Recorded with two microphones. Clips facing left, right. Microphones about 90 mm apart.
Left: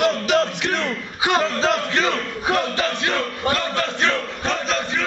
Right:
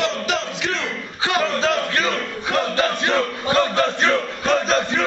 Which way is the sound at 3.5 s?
10° right (ahead or behind).